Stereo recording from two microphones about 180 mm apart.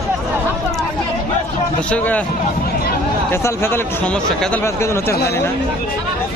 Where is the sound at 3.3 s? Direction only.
15° left (ahead or behind).